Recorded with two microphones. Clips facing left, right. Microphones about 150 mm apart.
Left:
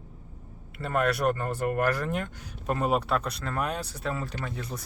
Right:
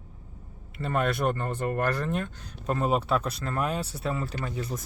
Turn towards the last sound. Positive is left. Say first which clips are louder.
# right 2 dB
turn(degrees=-5)  # may be behind; listen again after turning